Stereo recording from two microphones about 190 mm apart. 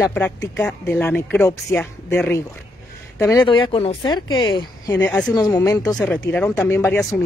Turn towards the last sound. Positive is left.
turn(degrees=15)  # may be behind; listen again after turning